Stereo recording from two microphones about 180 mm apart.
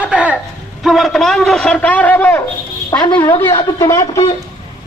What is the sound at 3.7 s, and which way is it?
Speech, 15° left (ahead or behind).